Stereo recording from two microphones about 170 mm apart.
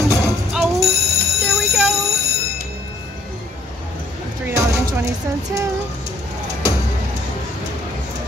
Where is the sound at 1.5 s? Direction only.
Centre (ahead or behind).